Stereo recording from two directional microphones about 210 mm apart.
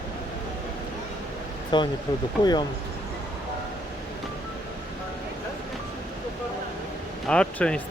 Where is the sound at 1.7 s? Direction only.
20° left (ahead or behind).